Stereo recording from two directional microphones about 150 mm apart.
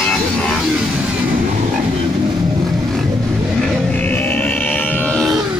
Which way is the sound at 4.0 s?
10° left (ahead or behind).